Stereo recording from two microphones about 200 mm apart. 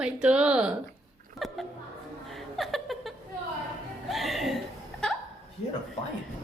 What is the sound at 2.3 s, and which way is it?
Laughter, centre (ahead or behind).